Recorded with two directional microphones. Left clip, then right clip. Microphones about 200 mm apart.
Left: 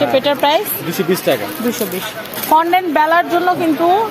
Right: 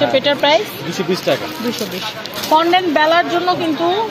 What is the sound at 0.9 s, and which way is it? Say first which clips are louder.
Speech: left 2 dB; 50° left (ahead or behind).